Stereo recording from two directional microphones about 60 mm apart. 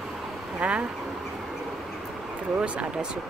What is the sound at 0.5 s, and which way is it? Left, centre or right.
Speech, centre.